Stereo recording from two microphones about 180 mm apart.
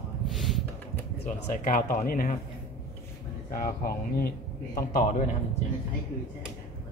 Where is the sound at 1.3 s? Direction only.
45° left (ahead or behind).